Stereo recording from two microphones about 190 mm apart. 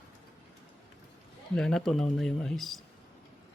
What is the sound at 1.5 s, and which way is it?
Speech, 5° left (ahead or behind).